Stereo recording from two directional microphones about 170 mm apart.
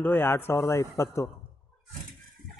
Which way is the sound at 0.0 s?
15° left (ahead or behind).